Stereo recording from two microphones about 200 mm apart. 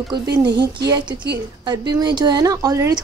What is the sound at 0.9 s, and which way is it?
A woman's voice, 20° right (ahead or behind).